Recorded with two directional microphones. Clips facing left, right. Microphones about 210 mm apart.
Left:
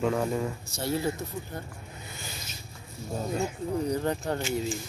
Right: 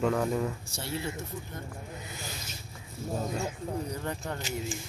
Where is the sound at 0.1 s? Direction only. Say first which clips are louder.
Even; centre (ahead or behind).